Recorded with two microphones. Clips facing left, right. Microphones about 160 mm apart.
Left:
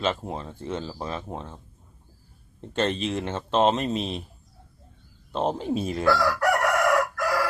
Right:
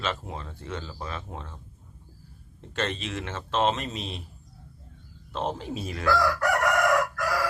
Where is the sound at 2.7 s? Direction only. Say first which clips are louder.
Left 5 dB; 30° left (ahead or behind).